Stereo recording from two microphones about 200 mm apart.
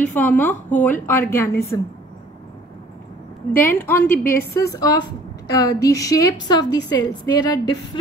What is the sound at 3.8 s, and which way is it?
A woman's voice, 10° left (ahead or behind).